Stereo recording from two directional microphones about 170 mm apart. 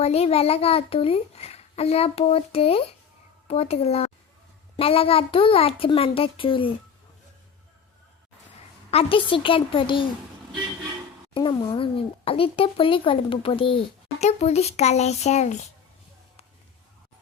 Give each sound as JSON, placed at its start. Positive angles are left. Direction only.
{"t": 0.0, "sound": "speech", "side_deg": 35}
{"t": 8.9, "sound": "speech", "side_deg": 35}
{"t": 11.3, "sound": "speech", "side_deg": 25}